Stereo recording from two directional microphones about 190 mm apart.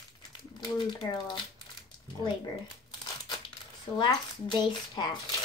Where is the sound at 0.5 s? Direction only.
25° left (ahead or behind).